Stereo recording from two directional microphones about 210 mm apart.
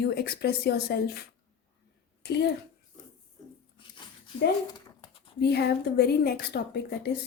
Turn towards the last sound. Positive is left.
turn(degrees=50)  # may be behind; listen again after turning